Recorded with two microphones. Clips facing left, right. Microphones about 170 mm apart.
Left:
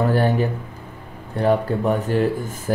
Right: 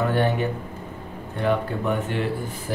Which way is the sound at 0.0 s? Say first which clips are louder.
Left 3 dB; 35° left (ahead or behind).